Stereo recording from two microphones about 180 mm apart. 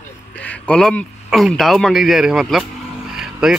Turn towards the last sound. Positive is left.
turn(degrees=-5)  # may be behind; listen again after turning